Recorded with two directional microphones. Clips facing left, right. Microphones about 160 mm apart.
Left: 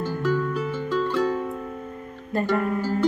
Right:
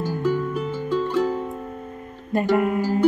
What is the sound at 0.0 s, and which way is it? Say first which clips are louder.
Music: right 1 dB; 15° right (ahead or behind).